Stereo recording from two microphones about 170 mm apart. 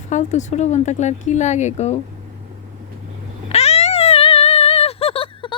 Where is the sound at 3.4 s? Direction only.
40° left (ahead or behind).